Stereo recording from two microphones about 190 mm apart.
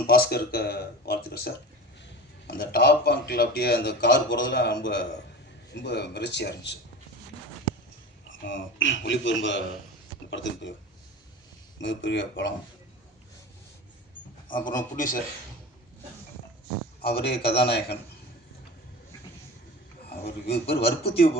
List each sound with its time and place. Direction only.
0.1 s speech: 55° left (ahead or behind)
8.3 s a man's voice: 80° left
11.8 s a man's voice: 70° left (ahead or behind)
14.5 s a man's voice: 45° left (ahead or behind)
17.0 s speech: 55° left (ahead or behind)
20.1 s speech: 60° left (ahead or behind)